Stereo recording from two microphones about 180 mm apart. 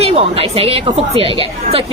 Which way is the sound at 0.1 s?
30° right (ahead or behind).